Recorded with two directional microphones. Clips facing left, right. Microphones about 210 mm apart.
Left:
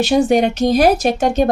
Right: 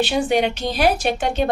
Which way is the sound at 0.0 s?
45° left (ahead or behind).